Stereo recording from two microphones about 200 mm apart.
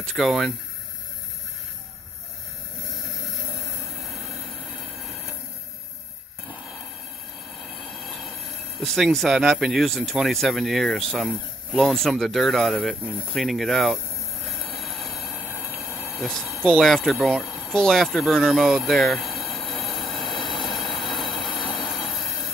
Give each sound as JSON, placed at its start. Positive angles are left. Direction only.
{"t": 0.0, "sound": "speech", "side_deg": 0}
{"t": 3.8, "sound": "train", "side_deg": 0}
{"t": 7.7, "sound": "train", "side_deg": 0}
{"t": 8.7, "sound": "speech", "side_deg": 0}
{"t": 14.7, "sound": "train", "side_deg": 0}
{"t": 15.9, "sound": "train", "side_deg": 10}
{"t": 16.2, "sound": "speech", "side_deg": 0}
{"t": 19.6, "sound": "train", "side_deg": 0}
{"t": 20.2, "sound": "train", "side_deg": 25}